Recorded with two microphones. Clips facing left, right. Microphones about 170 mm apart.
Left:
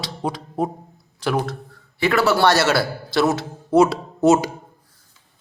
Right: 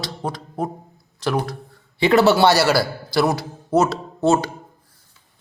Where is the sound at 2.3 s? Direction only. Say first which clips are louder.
Right 1 dB; 5° right (ahead or behind).